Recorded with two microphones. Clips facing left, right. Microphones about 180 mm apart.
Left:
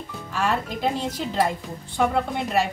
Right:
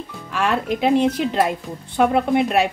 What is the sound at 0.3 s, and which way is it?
Speech, 65° right (ahead or behind).